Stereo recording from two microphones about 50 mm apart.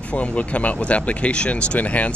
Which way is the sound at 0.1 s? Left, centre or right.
Left.